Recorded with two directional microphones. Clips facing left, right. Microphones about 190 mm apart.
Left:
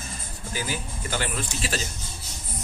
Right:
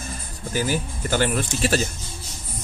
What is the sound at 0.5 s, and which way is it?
Speech, 45° right (ahead or behind).